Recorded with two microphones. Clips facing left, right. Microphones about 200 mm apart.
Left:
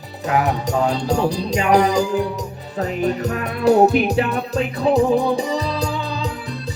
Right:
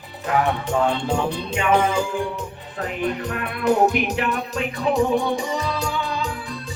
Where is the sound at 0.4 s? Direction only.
40° left (ahead or behind).